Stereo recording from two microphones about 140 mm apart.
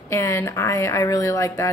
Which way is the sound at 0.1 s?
20° left (ahead or behind).